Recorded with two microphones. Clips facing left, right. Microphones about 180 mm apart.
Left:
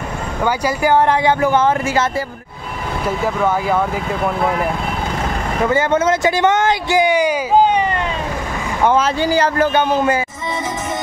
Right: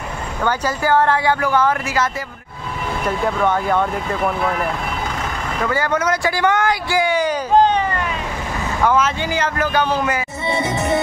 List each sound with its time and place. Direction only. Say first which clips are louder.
0.4 s speech: left 3 dB; 10° left (ahead or behind)
3.1 s speech: left 1 dB; 5° left (ahead or behind)
5.6 s speech: left 4 dB; 25° left (ahead or behind)
8.8 s speech: left 3 dB; 30° left (ahead or behind)
10.4 s music: right 3 dB; 70° right (ahead or behind)